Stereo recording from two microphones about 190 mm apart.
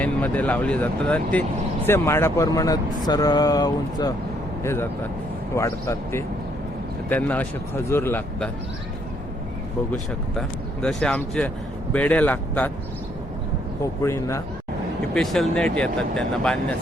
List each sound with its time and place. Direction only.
0.0 s speech: 10° left (ahead or behind)
9.9 s speech: 5° left (ahead or behind)
14.0 s speech: 15° left (ahead or behind)
15.1 s speech: centre (ahead or behind)